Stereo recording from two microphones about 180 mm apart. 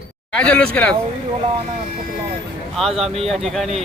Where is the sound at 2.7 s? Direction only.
Centre (ahead or behind).